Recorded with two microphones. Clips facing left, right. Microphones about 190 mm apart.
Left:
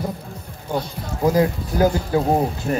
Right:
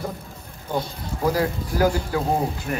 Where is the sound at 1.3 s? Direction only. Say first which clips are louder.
Left 5 dB; 20° left (ahead or behind).